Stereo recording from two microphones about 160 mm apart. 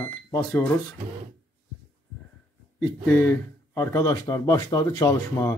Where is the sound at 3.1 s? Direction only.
15° left (ahead or behind).